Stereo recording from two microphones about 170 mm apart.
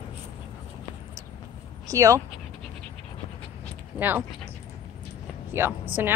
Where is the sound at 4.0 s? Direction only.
10° right (ahead or behind).